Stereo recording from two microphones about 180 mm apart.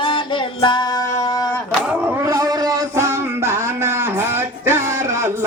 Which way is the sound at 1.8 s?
10° right (ahead or behind).